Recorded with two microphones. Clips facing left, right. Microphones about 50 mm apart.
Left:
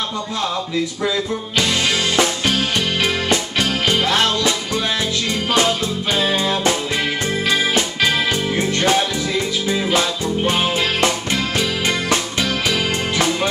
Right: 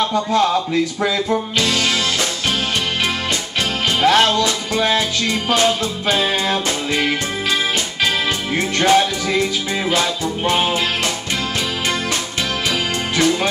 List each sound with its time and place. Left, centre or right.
1.0 s music: right
1.6 s music: left
8.5 s music: right